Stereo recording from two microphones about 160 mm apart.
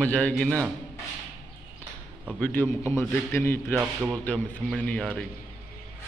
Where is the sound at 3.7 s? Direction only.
10° right (ahead or behind).